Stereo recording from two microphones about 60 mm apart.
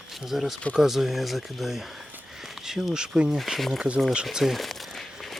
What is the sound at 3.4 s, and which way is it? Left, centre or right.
Speech, centre.